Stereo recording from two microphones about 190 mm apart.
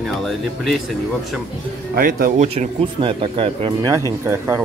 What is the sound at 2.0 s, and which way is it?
Speech, 50° right (ahead or behind).